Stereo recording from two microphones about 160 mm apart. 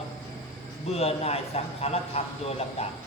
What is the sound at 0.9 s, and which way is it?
A man's voice, 40° left (ahead or behind).